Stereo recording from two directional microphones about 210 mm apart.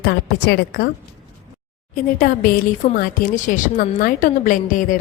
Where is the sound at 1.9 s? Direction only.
40° left (ahead or behind).